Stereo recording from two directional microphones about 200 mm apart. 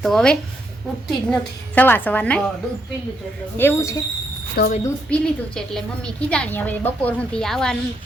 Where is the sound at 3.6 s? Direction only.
10° left (ahead or behind).